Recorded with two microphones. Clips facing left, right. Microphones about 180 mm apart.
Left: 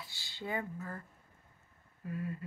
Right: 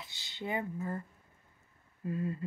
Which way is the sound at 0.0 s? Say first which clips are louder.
Right 3 dB; 20° right (ahead or behind).